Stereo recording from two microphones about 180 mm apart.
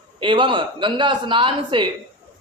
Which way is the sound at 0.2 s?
25° right (ahead or behind).